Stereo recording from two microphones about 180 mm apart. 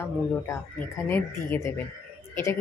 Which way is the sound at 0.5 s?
10° left (ahead or behind).